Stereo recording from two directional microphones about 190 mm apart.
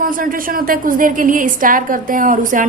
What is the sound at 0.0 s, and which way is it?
A woman's voice, 45° right (ahead or behind).